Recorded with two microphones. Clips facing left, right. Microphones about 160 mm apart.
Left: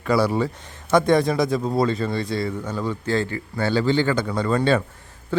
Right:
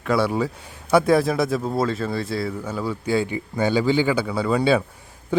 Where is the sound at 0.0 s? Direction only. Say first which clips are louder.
Left 1 dB; centre (ahead or behind).